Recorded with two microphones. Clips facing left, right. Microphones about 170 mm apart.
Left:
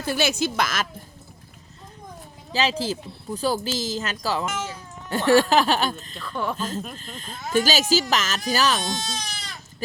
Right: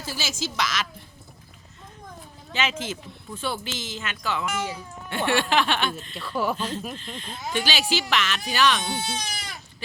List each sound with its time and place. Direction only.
0.0 s a woman's voice: 60° left (ahead or behind)
2.5 s speech: 35° left (ahead or behind)
4.5 s speech: 10° right (ahead or behind)
5.0 s speech: 40° left (ahead or behind)
6.1 s speech: 5° right (ahead or behind)
6.6 s speech: 45° left (ahead or behind)
8.9 s speech: 10° right (ahead or behind)